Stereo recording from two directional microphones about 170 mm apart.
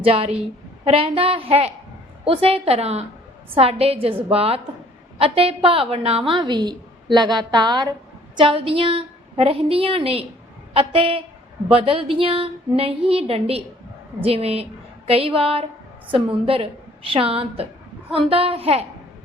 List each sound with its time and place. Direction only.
0.0 s a woman's voice: 35° right (ahead or behind)